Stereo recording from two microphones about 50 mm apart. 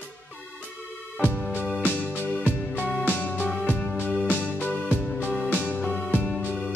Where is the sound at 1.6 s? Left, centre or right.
Centre.